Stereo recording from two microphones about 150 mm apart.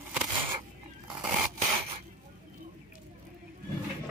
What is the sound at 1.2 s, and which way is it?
Rub, 5° right (ahead or behind).